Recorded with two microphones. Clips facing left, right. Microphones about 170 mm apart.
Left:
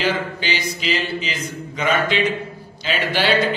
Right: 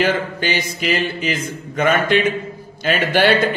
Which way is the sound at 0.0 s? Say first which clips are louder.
Right 4 dB; 50° right (ahead or behind).